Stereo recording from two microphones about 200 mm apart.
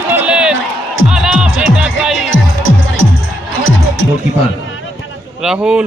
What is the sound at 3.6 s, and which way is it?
Music, 85° left.